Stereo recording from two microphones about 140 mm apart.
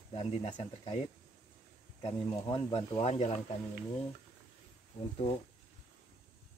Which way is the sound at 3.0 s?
50° left (ahead or behind).